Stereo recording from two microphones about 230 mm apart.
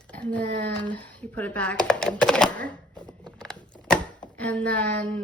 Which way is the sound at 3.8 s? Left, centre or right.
Centre.